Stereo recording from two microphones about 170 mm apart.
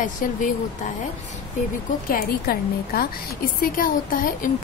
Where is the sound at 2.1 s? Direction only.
60° left (ahead or behind).